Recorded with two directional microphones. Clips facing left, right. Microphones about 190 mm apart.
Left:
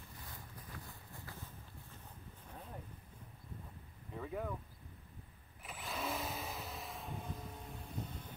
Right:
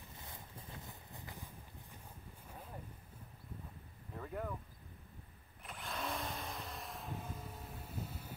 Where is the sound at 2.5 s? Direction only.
5° right (ahead or behind).